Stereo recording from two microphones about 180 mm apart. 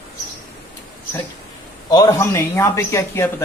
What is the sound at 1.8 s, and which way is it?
A man's voice, 20° left (ahead or behind).